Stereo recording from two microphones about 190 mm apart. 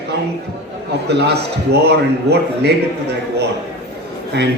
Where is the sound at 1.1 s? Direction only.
60° right (ahead or behind).